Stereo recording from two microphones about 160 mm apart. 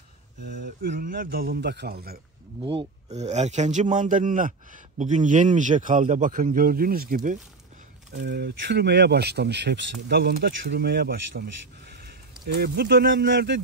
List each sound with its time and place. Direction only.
0.4 s a man's voice: 80° right
2.6 s speech: 30° right (ahead or behind)
3.1 s a man's voice: 45° right (ahead or behind); by 7.3 s 65° right (ahead or behind)
8.2 s speech: 90° right
12.5 s speech: 85° right